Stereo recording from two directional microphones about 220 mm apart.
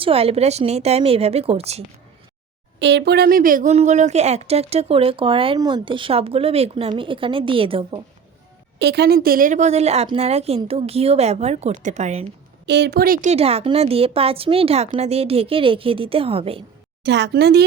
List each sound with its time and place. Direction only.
0.0 s speech: 25° right (ahead or behind)
2.7 s speech: 50° right (ahead or behind); by 7.9 s 25° right (ahead or behind)
8.8 s speech: 50° right (ahead or behind); by 12.2 s 30° right (ahead or behind)
12.6 s speech: 50° right (ahead or behind)
13.3 s speech: 25° right (ahead or behind)
17.0 s speech: 50° right (ahead or behind)